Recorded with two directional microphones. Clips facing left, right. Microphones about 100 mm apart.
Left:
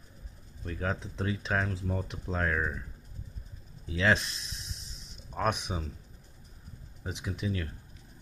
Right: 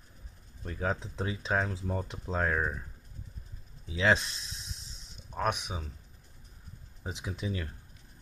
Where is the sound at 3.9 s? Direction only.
15° right (ahead or behind).